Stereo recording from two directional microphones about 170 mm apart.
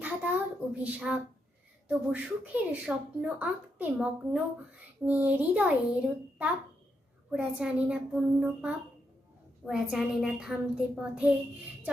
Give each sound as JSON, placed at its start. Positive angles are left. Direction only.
{"t": 0.0, "sound": "a sound", "side_deg": -10}
{"t": 1.9, "sound": "speech", "side_deg": -10}
{"t": 7.3, "sound": "a child's voice", "side_deg": -5}